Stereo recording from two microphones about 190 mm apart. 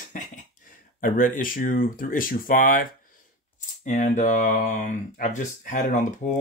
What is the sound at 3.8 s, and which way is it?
Speech, 40° left (ahead or behind).